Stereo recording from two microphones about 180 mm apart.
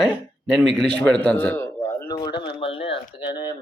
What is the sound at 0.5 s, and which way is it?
A man's voice, centre (ahead or behind).